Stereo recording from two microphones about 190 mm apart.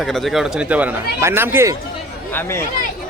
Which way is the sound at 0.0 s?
Centre (ahead or behind).